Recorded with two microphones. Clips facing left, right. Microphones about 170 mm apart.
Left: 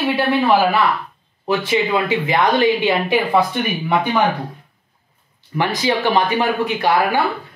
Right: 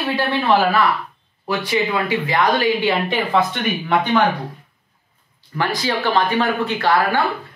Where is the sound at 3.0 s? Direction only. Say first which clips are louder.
Left 2 dB; 10° left (ahead or behind).